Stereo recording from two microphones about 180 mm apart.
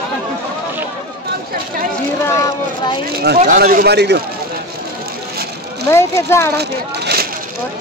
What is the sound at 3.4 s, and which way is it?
Speech, 50° right (ahead or behind).